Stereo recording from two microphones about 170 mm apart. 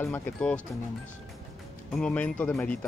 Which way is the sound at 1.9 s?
5° left (ahead or behind).